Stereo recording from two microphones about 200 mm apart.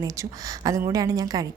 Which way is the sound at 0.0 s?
15° right (ahead or behind).